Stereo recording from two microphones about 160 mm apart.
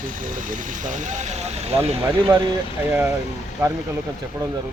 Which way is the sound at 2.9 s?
10° right (ahead or behind).